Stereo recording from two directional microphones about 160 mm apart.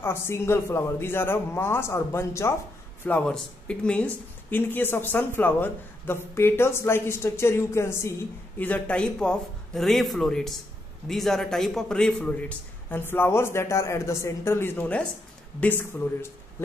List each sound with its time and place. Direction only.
0.0 s speech: 15° left (ahead or behind)